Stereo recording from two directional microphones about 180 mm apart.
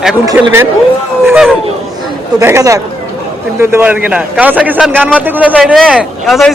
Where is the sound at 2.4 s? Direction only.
15° right (ahead or behind).